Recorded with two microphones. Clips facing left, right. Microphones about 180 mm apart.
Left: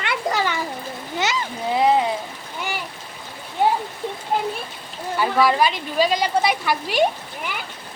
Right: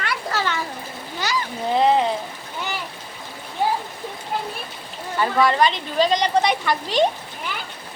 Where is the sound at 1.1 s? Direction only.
25° left (ahead or behind).